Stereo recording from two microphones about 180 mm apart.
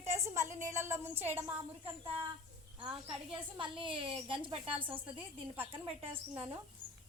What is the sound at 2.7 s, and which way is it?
A woman's voice, 30° right (ahead or behind).